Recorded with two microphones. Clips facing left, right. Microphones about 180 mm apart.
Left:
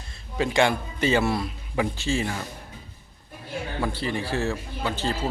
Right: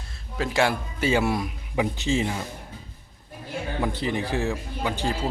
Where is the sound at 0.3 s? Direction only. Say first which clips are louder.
Left 2 dB; centre (ahead or behind); by 2.4 s 20° right (ahead or behind).